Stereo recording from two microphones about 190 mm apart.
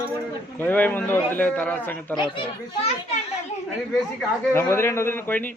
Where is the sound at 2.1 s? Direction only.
25° left (ahead or behind).